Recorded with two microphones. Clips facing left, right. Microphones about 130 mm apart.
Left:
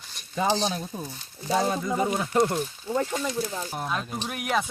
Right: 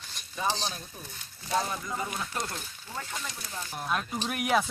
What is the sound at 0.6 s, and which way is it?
Speech, 90° left.